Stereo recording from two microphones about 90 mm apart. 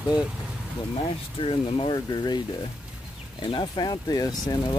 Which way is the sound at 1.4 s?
90° left.